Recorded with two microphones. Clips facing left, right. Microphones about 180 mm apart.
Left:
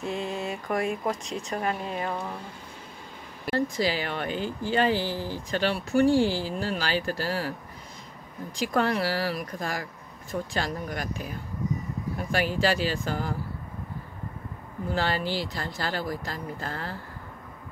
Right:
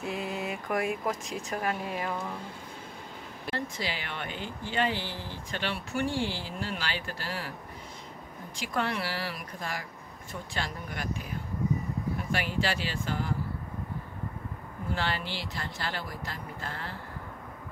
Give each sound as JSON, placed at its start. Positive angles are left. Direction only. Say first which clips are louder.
{"t": 0.0, "sound": "speech", "louder": "left 3 dB", "side_deg": -5}
{"t": 3.5, "sound": "speech", "louder": "left 9 dB", "side_deg": 40}
{"t": 8.5, "sound": "speech", "louder": "left 6 dB", "side_deg": 40}
{"t": 12.3, "sound": "speech", "louder": "left 7 dB", "side_deg": 40}
{"t": 15.0, "sound": "speech", "louder": "left 7 dB", "side_deg": 40}